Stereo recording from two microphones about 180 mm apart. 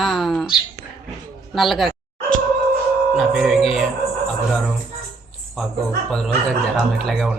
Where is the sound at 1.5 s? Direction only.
Centre (ahead or behind).